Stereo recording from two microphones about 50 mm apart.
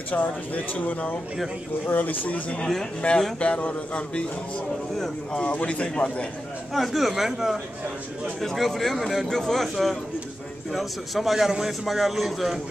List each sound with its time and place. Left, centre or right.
0.1 s a man's voice: left
5.3 s a man's voice: left
6.7 s a man's voice: centre
8.4 s a man's voice: centre